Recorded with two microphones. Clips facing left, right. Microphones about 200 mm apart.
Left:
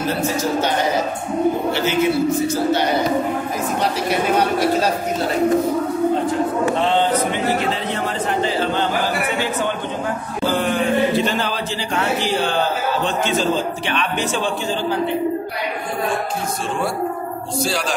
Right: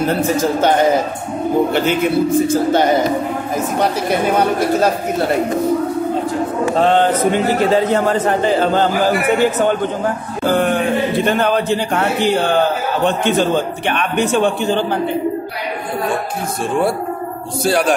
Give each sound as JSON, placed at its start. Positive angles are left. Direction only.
{"t": 0.4, "sound": "a man's voice", "side_deg": -50}
{"t": 6.7, "sound": "a man's voice", "side_deg": -50}
{"t": 10.5, "sound": "chant", "side_deg": -60}
{"t": 11.2, "sound": "a man's voice", "side_deg": -55}
{"t": 17.6, "sound": "a man's voice", "side_deg": -55}